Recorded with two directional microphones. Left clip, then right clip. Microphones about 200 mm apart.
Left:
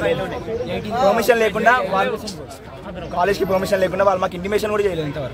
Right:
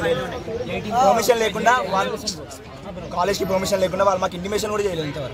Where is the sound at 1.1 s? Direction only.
10° left (ahead or behind).